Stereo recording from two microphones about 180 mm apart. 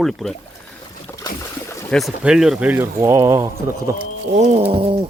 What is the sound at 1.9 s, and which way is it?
Speech, centre (ahead or behind).